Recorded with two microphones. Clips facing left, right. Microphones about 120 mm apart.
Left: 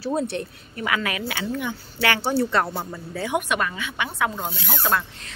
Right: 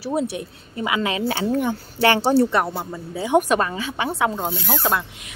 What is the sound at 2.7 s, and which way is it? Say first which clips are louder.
Speech: right 2 dB; 10° right (ahead or behind).